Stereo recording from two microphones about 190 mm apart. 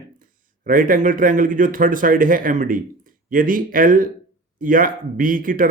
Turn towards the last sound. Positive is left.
turn(degrees=-45)  # may be behind; listen again after turning